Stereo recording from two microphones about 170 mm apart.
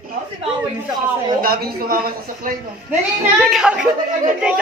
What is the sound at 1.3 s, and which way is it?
Speech, 60° right (ahead or behind).